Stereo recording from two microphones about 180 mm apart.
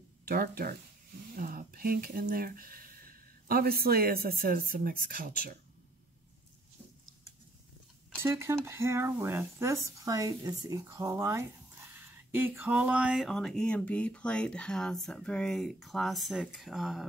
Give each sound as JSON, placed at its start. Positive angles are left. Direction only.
{"t": 0.2, "sound": "speech", "side_deg": -55}
{"t": 8.2, "sound": "speech", "side_deg": -15}